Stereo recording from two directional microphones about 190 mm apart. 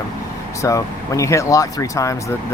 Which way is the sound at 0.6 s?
15° left (ahead or behind).